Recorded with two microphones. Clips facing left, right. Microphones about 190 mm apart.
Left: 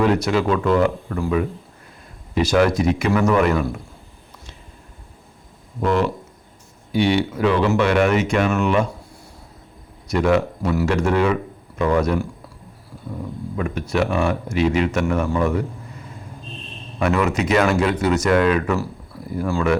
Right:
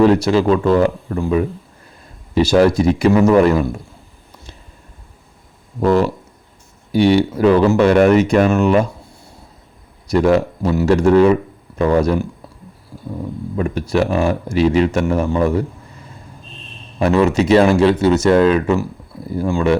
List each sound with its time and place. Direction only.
0.0 s speech: 30° right (ahead or behind)
2.3 s speech: 30° right (ahead or behind)
5.8 s speech: 35° right (ahead or behind)
10.1 s speech: 35° right (ahead or behind)
13.6 s speech: 35° right (ahead or behind)
17.0 s speech: 30° right (ahead or behind)